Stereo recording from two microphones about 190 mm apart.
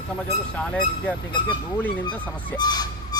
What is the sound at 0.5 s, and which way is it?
Speech, 5° left (ahead or behind).